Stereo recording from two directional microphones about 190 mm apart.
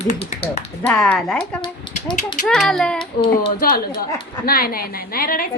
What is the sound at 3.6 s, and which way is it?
A woman's voice, 50° left (ahead or behind).